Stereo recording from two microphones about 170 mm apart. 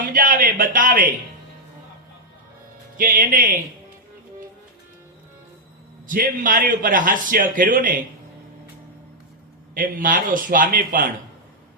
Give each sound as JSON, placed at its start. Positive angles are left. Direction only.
{"t": 0.0, "sound": "a sound", "side_deg": -50}
{"t": 3.0, "sound": "a man's voice", "side_deg": -55}
{"t": 6.1, "sound": "a man's voice", "side_deg": -55}
{"t": 9.7, "sound": "a man's voice", "side_deg": -55}